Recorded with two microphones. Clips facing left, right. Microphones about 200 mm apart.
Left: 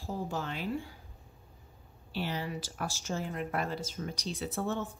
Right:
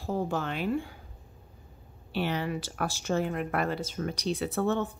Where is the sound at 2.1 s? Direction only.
65° right (ahead or behind).